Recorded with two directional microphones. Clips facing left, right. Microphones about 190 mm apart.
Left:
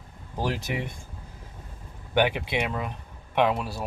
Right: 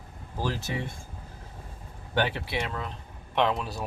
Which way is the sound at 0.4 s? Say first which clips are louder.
Left 2 dB; 15° left (ahead or behind).